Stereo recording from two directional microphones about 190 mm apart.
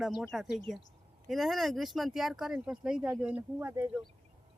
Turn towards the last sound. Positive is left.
turn(degrees=-10)  # may be behind; listen again after turning